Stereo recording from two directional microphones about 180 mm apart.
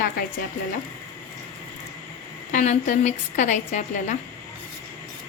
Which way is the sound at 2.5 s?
40° left (ahead or behind).